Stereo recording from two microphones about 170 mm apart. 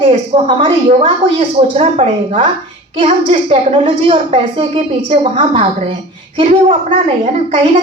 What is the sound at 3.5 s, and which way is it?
A woman's voice, 35° right (ahead or behind).